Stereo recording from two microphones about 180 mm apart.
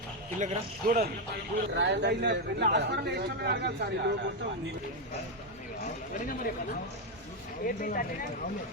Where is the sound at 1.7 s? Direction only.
70° right (ahead or behind).